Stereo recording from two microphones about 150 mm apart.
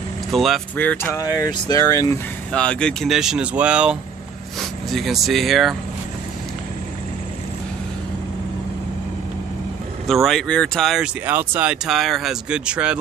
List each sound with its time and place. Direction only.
0.3 s speech: centre (ahead or behind)
0.7 s speech: 10° left (ahead or behind)
1.2 s speech: 25° left (ahead or behind)
2.5 s speech: 5° left (ahead or behind)
10.0 s speech: centre (ahead or behind)
11.2 s speech: 10° right (ahead or behind)